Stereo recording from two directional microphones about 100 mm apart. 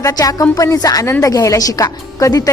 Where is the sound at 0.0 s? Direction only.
35° left (ahead or behind).